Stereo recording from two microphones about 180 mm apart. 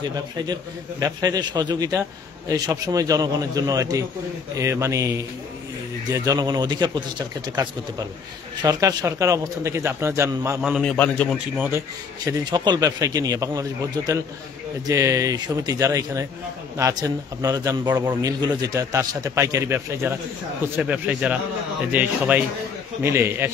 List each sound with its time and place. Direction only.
0.4 s a man's voice: 20° right (ahead or behind)
8.6 s speech: 20° right (ahead or behind)
10.6 s a man's voice: centre (ahead or behind)
11.3 s speech: 5° right (ahead or behind)
12.3 s a man's voice: 25° right (ahead or behind)